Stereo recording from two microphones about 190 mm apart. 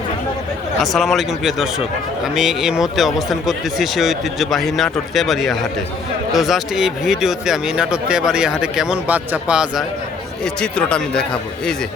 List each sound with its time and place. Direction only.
0.8 s speech: centre (ahead or behind)